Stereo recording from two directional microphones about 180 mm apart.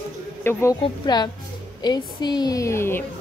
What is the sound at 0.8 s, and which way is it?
A woman's voice, 25° left (ahead or behind).